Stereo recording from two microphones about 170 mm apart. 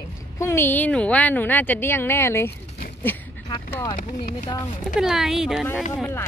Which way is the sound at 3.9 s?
50° left (ahead or behind).